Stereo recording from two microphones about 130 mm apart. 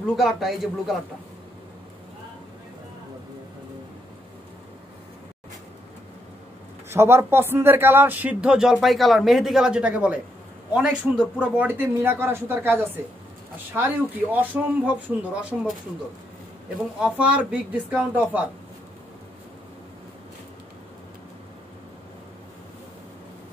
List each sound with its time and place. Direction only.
0.0 s a man's voice: centre (ahead or behind)
6.9 s speech: 20° right (ahead or behind)
17.0 s speech: 10° right (ahead or behind)